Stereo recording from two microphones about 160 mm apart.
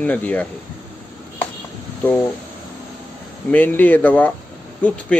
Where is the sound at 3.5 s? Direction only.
10° left (ahead or behind).